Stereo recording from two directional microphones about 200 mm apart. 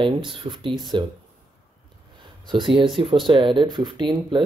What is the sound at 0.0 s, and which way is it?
Speech, 25° right (ahead or behind).